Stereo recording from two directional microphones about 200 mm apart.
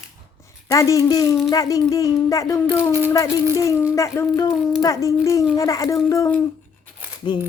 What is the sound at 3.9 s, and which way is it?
Speech, 15° left (ahead or behind).